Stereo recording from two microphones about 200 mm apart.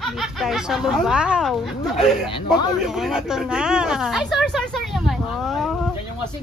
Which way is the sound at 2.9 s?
Centre (ahead or behind).